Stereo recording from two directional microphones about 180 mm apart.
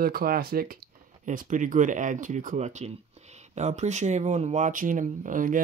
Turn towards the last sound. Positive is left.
turn(degrees=-45)  # may be behind; listen again after turning